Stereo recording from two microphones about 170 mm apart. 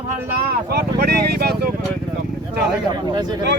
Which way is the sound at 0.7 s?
65° right (ahead or behind).